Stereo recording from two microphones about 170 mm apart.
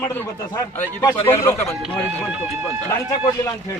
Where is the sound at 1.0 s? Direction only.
15° left (ahead or behind).